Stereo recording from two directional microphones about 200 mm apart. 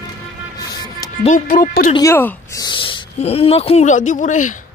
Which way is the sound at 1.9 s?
15° left (ahead or behind).